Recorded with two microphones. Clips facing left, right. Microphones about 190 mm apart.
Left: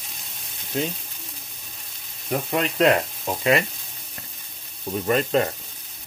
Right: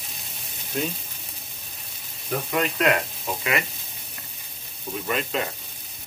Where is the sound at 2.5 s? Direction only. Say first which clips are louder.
Left 3 dB; 30° left (ahead or behind).